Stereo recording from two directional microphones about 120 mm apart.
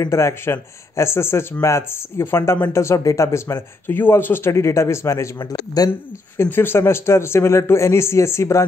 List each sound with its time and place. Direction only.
0.0 s a man's voice: 25° left (ahead or behind)
6.3 s speech: 20° left (ahead or behind)